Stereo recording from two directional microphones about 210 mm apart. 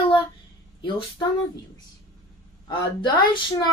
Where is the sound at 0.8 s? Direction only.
25° left (ahead or behind).